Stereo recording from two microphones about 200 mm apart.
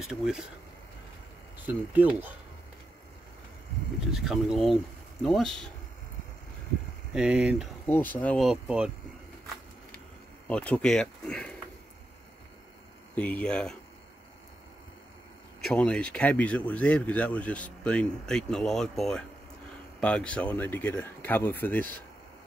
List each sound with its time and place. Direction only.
0.0 s speech: centre (ahead or behind)
1.7 s speech: 10° right (ahead or behind)
4.1 s speech: centre (ahead or behind)
7.1 s speech: 5° right (ahead or behind)
7.8 s speech: 10° left (ahead or behind)
10.5 s speech: 5° left (ahead or behind)
13.1 s speech: 5° left (ahead or behind)
15.6 s speech: 5° left (ahead or behind)